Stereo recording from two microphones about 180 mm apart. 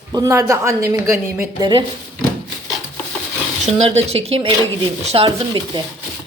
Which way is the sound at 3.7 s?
35° right (ahead or behind).